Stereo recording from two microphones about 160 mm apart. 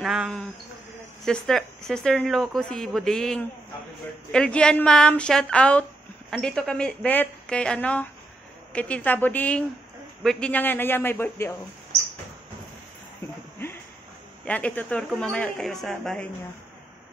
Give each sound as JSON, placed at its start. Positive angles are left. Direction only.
{"t": 0.0, "sound": "a man's voice", "side_deg": 0}
{"t": 14.4, "sound": "speech", "side_deg": 10}